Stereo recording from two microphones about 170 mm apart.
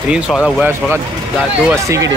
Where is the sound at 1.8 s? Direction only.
20° right (ahead or behind).